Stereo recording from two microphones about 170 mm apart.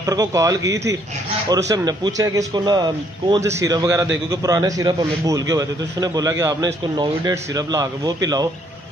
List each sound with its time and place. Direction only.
0.0 s a man's voice: 20° right (ahead or behind)